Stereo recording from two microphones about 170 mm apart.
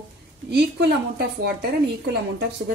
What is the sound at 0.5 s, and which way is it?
A woman's voice, 75° right (ahead or behind).